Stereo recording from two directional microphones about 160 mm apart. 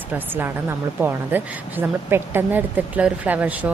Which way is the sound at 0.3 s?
15° right (ahead or behind).